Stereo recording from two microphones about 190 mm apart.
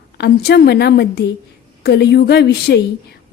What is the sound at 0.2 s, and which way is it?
A woman's voice, 60° left (ahead or behind).